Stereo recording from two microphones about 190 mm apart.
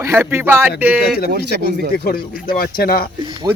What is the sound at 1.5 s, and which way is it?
Speech, 55° left (ahead or behind).